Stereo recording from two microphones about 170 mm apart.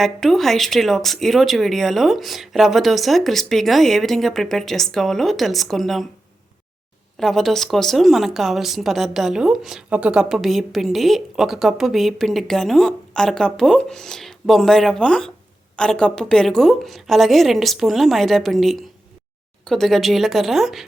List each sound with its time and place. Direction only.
0.0 s speech: centre (ahead or behind)
7.2 s speech: centre (ahead or behind)